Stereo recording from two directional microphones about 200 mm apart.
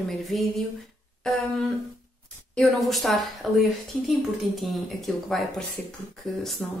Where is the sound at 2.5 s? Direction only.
Centre (ahead or behind).